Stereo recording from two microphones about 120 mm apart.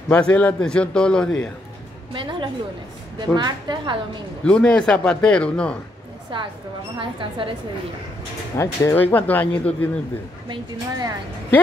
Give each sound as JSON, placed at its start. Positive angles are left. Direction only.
{"t": 0.1, "sound": "a man's voice", "side_deg": 10}
{"t": 2.1, "sound": "a woman's voice", "side_deg": -40}
{"t": 4.5, "sound": "a man's voice", "side_deg": 10}
{"t": 6.3, "sound": "speech", "side_deg": -45}
{"t": 8.5, "sound": "speech", "side_deg": 25}
{"t": 9.1, "sound": "a man's voice", "side_deg": 15}
{"t": 10.5, "sound": "a woman's voice", "side_deg": -35}